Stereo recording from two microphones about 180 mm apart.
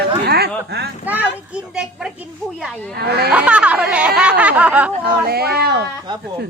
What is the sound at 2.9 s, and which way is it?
Speech, 65° right (ahead or behind).